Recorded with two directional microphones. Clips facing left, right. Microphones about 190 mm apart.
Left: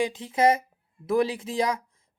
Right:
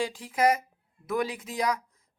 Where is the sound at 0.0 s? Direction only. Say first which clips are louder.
Left 3 dB; 20° left (ahead or behind).